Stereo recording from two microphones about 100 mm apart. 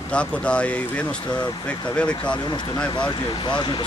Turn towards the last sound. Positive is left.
turn(degrees=50)  # may be behind; listen again after turning